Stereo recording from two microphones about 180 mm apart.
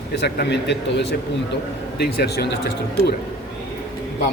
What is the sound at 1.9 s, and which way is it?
A man's voice, 60° left (ahead or behind).